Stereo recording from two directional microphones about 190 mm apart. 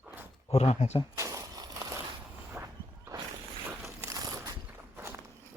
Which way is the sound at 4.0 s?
20° right (ahead or behind).